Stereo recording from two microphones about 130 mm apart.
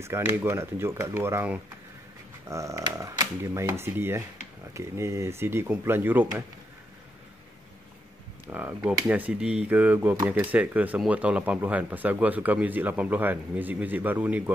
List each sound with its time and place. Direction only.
0.0 s speech: 20° right (ahead or behind)
2.4 s dog: 25° right (ahead or behind)
2.8 s speech: 25° right (ahead or behind)
8.5 s speech: 15° right (ahead or behind)